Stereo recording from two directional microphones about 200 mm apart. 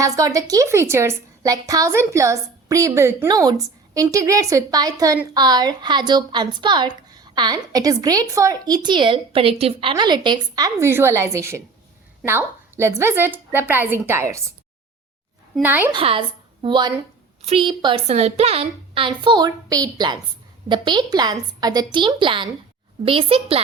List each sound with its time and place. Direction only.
0.0 s a woman's voice: 15° right (ahead or behind)
15.5 s a woman's voice: 10° right (ahead or behind)
15.9 s a woman's voice: 25° right (ahead or behind)